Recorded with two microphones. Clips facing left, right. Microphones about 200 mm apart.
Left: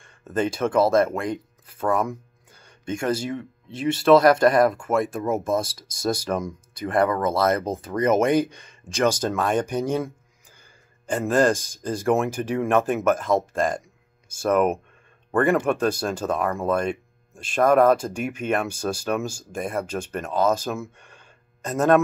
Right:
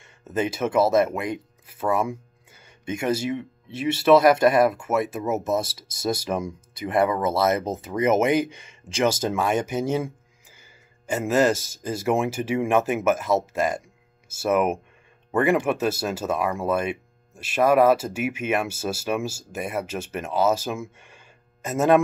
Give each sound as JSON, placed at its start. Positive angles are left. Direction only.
{"t": 0.0, "sound": "a sound", "side_deg": -10}
{"t": 0.6, "sound": "speech", "side_deg": -5}
{"t": 5.6, "sound": "speech", "side_deg": -25}
{"t": 6.2, "sound": "speech", "side_deg": -10}
{"t": 11.2, "sound": "speech", "side_deg": -5}